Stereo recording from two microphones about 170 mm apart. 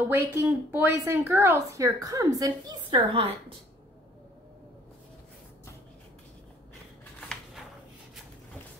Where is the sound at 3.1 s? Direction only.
35° right (ahead or behind).